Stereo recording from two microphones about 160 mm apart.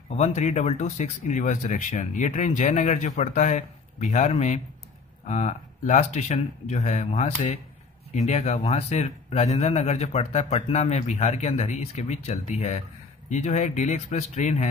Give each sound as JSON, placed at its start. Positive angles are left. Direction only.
{"t": 0.1, "sound": "a man's voice", "side_deg": 45}